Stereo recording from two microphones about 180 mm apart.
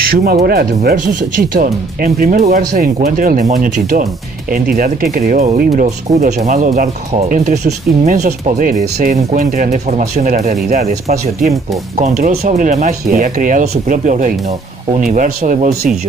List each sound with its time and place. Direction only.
0.1 s speech: 55° right (ahead or behind)
6.1 s speech: 40° right (ahead or behind)
12.0 s speech: 40° right (ahead or behind)